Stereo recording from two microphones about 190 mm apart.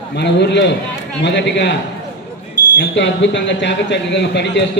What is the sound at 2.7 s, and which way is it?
Speech, 70° left (ahead or behind).